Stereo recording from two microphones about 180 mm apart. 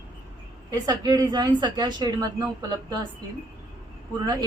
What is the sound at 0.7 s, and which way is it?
A woman's voice, 20° right (ahead or behind).